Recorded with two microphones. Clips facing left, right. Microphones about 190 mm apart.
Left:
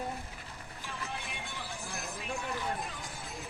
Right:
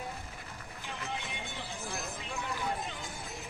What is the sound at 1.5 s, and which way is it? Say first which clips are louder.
Music: right 1 dB; 20° right (ahead or behind).